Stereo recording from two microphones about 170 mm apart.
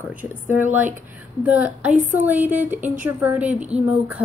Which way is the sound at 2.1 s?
10° right (ahead or behind).